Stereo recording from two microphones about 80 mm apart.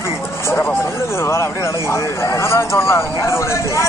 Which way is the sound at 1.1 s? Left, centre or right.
Left.